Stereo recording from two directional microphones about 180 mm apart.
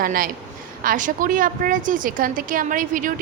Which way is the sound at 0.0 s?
50° right (ahead or behind).